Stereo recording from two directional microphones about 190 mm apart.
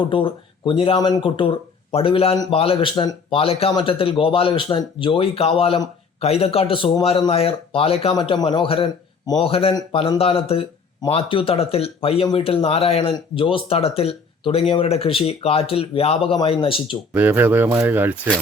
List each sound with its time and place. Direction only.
0.0 s speech: 25° left (ahead or behind)
17.2 s speech: 10° right (ahead or behind)